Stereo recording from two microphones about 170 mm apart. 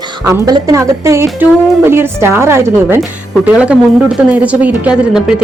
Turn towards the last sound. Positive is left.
turn(degrees=-5)  # may be behind; listen again after turning